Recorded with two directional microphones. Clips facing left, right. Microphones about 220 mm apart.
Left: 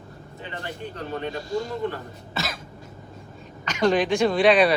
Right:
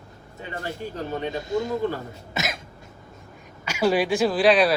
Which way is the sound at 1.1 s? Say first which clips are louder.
Right 1 dB; 20° right (ahead or behind).